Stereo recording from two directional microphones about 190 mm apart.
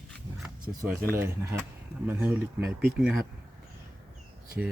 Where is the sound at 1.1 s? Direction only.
15° right (ahead or behind).